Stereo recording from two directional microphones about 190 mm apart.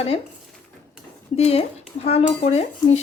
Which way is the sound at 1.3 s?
30° left (ahead or behind).